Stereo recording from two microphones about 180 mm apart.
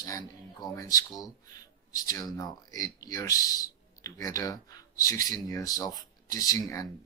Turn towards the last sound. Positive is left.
turn(degrees=15)  # may be behind; listen again after turning